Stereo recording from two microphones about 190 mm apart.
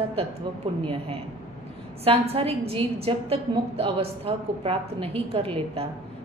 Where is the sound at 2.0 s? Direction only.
30° right (ahead or behind).